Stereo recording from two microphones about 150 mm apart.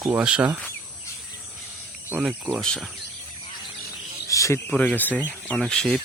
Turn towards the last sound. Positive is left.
turn(degrees=5)  # may be behind; listen again after turning